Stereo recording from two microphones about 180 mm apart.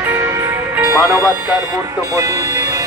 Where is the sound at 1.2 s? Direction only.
5° right (ahead or behind).